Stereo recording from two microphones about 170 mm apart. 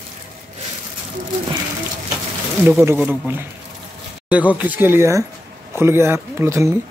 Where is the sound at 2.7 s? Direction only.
15° right (ahead or behind).